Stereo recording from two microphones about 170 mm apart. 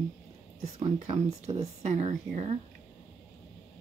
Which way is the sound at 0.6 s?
35° right (ahead or behind).